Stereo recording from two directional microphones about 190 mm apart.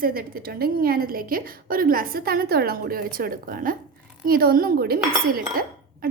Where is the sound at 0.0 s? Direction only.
50° right (ahead or behind).